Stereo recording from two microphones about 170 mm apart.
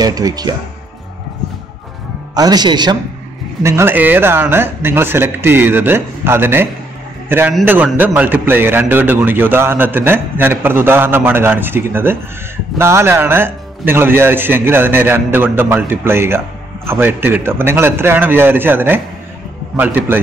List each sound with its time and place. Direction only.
0.0 s a man's voice: 20° right (ahead or behind)
2.3 s a man's voice: 25° right (ahead or behind)
3.6 s a man's voice: 15° right (ahead or behind)